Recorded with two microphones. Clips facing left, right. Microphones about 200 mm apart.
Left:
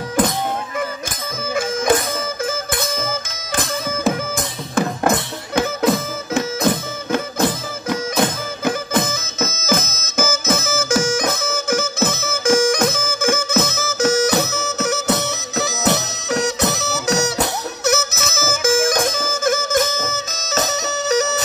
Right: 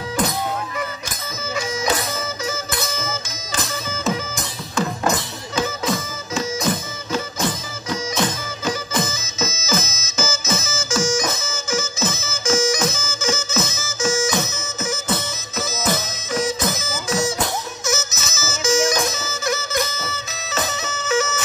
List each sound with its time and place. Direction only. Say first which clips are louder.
1.5 s music: left 5 dB; 55° left (ahead or behind)